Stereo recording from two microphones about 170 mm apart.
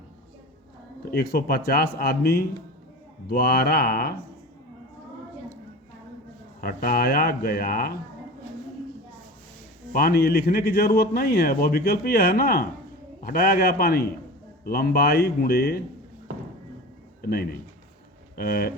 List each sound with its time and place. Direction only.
1.1 s speech: 65° left (ahead or behind)
6.6 s speech: 60° left (ahead or behind)
9.9 s a man's voice: 60° left (ahead or behind)
18.3 s speech: 60° left (ahead or behind)